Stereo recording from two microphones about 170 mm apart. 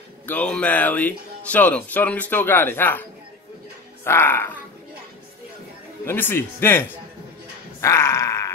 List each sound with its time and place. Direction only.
0.3 s speech: 10° left (ahead or behind)
6.0 s speech: 10° left (ahead or behind)
7.8 s a sound: 15° left (ahead or behind)